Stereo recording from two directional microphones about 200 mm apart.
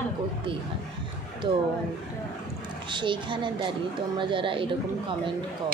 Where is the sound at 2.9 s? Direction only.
25° right (ahead or behind).